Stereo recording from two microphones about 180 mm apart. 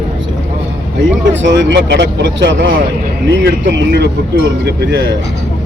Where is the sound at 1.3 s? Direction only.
85° right.